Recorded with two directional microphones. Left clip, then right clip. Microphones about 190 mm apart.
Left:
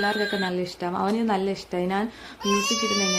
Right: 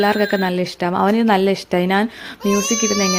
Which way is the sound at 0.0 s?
40° right (ahead or behind).